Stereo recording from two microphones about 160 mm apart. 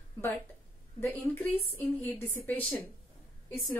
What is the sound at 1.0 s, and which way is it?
A woman's voice, 10° left (ahead or behind).